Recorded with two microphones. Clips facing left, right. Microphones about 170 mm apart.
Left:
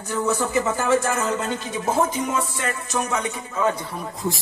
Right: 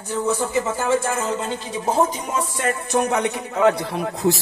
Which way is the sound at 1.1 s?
25° right (ahead or behind).